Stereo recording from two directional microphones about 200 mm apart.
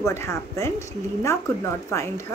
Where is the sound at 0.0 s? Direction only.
15° left (ahead or behind).